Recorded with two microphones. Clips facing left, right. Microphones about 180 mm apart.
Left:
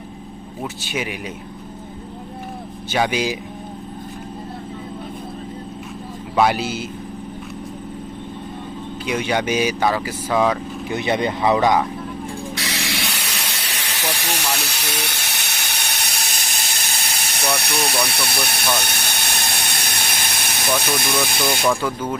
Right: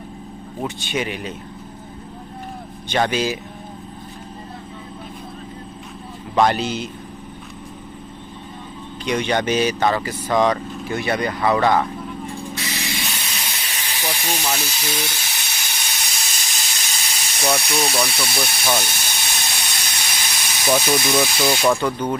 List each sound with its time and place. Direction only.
0.6 s speech: 5° left (ahead or behind)
2.9 s speech: 10° left (ahead or behind)
6.3 s speech: 5° left (ahead or behind)
9.0 s speech: 10° left (ahead or behind)
10.8 s speech: 20° left (ahead or behind)
12.5 s steam: 75° left (ahead or behind)
18.8 s a sound: 60° left (ahead or behind)
20.7 s speech: 60° left (ahead or behind)
21.7 s speech: 5° left (ahead or behind)